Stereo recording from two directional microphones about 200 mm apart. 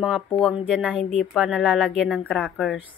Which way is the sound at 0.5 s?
5° right (ahead or behind).